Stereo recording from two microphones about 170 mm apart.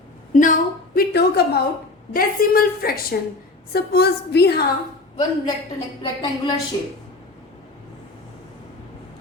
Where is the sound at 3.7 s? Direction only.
70° left (ahead or behind).